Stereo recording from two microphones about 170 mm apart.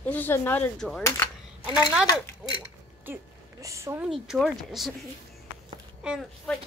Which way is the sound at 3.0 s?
15° right (ahead or behind).